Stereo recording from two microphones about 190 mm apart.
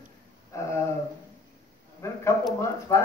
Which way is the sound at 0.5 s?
15° left (ahead or behind).